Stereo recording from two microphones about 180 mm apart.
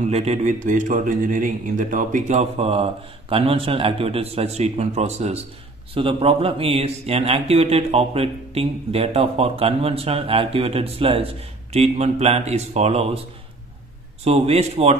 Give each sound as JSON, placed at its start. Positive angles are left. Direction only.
{"t": 0.1, "sound": "speech", "side_deg": -35}
{"t": 14.2, "sound": "speech", "side_deg": -35}